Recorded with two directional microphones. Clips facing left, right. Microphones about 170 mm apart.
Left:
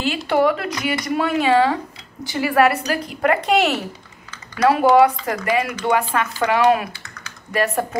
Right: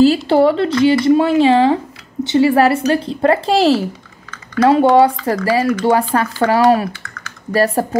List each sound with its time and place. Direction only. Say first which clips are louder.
0.0 s speech: right 8 dB; 35° right (ahead or behind)